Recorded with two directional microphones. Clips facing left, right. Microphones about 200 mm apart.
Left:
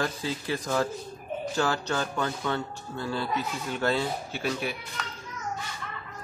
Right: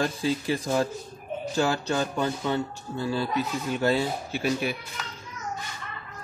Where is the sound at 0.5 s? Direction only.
15° right (ahead or behind).